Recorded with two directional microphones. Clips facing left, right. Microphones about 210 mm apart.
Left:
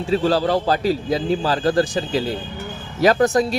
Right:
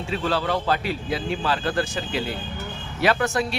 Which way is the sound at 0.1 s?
35° left (ahead or behind).